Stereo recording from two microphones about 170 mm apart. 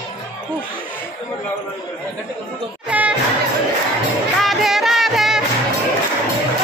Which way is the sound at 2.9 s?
10° right (ahead or behind).